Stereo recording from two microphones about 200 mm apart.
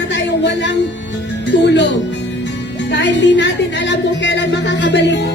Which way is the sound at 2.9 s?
65° left (ahead or behind).